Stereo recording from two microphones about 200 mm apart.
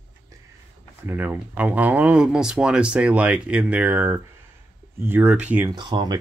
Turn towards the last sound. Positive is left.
turn(degrees=-20)  # may be behind; listen again after turning